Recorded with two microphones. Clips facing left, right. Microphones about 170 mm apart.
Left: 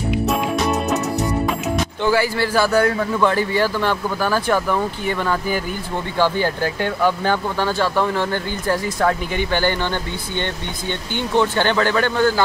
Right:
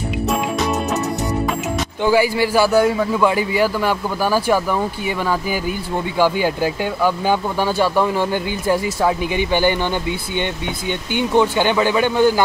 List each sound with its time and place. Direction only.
0.3 s music: centre (ahead or behind)
2.0 s speech: 15° right (ahead or behind)
6.1 s speech: 10° right (ahead or behind)
11.1 s speech: 10° right (ahead or behind)